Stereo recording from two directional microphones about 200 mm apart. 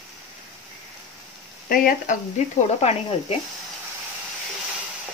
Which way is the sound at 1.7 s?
45° left (ahead or behind).